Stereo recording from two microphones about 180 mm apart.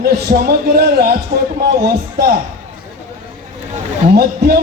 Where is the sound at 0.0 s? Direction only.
60° right (ahead or behind).